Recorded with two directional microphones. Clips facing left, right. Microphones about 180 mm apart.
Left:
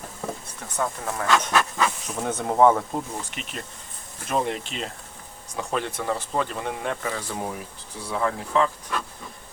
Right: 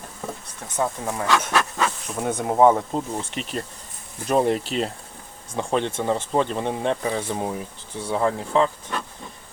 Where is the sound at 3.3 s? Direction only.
35° right (ahead or behind).